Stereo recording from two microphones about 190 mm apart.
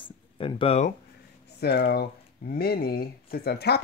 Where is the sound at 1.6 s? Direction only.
55° left (ahead or behind).